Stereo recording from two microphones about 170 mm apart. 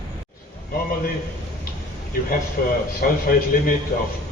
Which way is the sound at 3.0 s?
60° left (ahead or behind).